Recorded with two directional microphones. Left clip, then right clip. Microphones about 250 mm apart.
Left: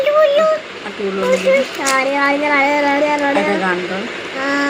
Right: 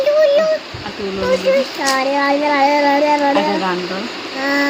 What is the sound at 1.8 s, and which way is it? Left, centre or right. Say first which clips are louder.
Speech: left 1 dB; centre.